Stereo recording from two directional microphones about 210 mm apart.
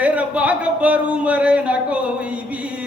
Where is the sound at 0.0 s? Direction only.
5° right (ahead or behind).